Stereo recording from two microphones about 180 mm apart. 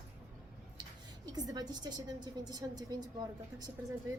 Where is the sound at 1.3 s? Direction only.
20° right (ahead or behind).